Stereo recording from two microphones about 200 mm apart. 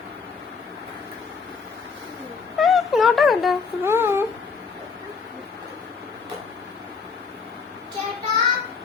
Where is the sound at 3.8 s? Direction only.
10° right (ahead or behind).